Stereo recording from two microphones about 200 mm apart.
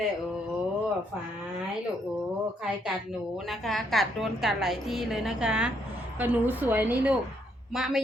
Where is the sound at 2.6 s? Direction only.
Centre (ahead or behind).